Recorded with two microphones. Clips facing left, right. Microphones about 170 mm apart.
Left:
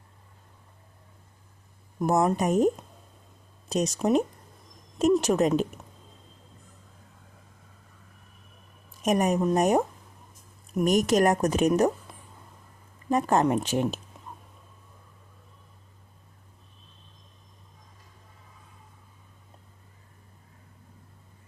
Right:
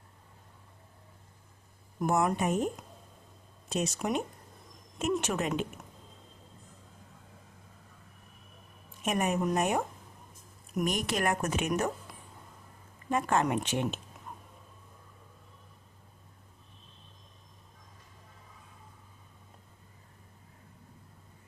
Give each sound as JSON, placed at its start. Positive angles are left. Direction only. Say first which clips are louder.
{"t": 2.0, "sound": "a woman's voice", "louder": "left 5 dB", "side_deg": 35}
{"t": 8.9, "sound": "a woman's voice", "louder": "left 6 dB", "side_deg": 40}
{"t": 10.8, "sound": "a woman's voice", "louder": "left 10 dB", "side_deg": 45}
{"t": 12.1, "sound": "a sound", "louder": "left 2 dB", "side_deg": 25}
{"t": 13.1, "sound": "a woman's voice", "louder": "left 5 dB", "side_deg": 40}